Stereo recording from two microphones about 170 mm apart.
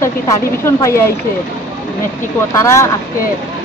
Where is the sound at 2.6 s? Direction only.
20° left (ahead or behind).